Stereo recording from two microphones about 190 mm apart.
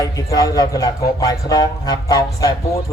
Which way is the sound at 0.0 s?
20° left (ahead or behind).